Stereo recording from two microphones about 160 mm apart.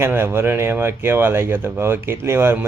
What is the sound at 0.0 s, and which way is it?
A man's voice, 15° right (ahead or behind).